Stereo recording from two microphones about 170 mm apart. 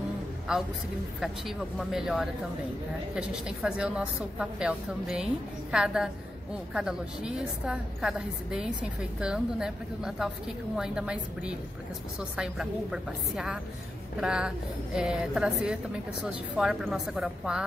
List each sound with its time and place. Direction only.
0.5 s a woman's voice: 5° right (ahead or behind)